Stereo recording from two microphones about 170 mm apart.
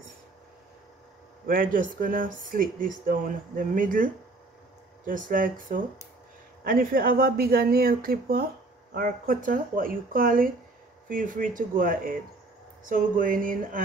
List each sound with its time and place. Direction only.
1.4 s speech: 60° right (ahead or behind)